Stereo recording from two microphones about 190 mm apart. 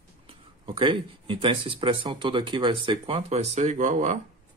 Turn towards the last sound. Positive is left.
turn(degrees=-40)  # may be behind; listen again after turning